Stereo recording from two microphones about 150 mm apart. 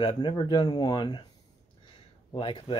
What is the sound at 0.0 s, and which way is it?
Speech, 30° left (ahead or behind).